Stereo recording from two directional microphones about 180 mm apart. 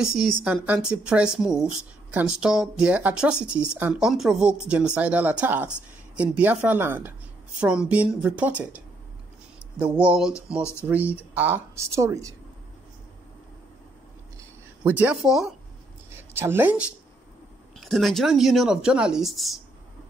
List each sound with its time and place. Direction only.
0.1 s speech: 5° right (ahead or behind)
9.9 s speech: 5° right (ahead or behind)
10.6 s speech: 15° left (ahead or behind)
11.3 s speech: 10° right (ahead or behind)
14.8 s speech: 10° right (ahead or behind)
16.1 s a woman's voice: 15° right (ahead or behind)
17.7 s speech: centre (ahead or behind)